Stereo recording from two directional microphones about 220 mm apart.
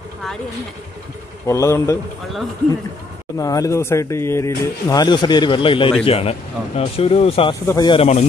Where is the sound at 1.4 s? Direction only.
15° left (ahead or behind).